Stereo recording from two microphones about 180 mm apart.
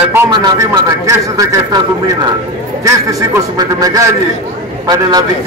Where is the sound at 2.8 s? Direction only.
20° right (ahead or behind).